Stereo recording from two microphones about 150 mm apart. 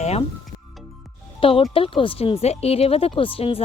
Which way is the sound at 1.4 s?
35° left (ahead or behind).